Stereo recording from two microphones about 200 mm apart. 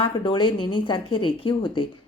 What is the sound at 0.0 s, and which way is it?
A woman's voice, 25° left (ahead or behind).